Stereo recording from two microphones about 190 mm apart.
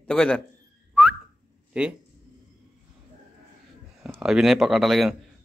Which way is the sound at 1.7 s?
5° right (ahead or behind).